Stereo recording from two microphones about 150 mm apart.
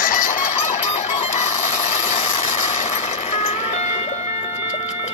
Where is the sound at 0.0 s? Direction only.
65° left (ahead or behind).